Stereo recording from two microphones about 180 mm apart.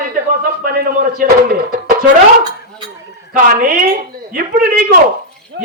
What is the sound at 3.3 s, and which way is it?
Speech, 50° right (ahead or behind).